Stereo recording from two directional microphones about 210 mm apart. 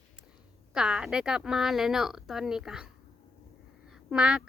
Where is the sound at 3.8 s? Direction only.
5° right (ahead or behind).